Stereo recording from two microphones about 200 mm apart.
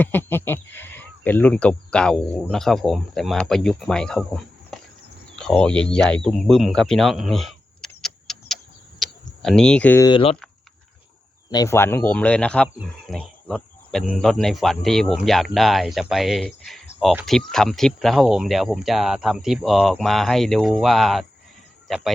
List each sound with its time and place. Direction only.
0.0 s speech: 10° left (ahead or behind)
6.2 s camera: centre (ahead or behind)
9.0 s a sound: centre (ahead or behind)
10.1 s speech: 25° left (ahead or behind)
11.5 s speech: 15° left (ahead or behind); by 22.1 s centre (ahead or behind)